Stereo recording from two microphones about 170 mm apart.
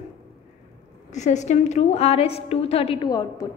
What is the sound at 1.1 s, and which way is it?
A woman's voice, 45° left (ahead or behind).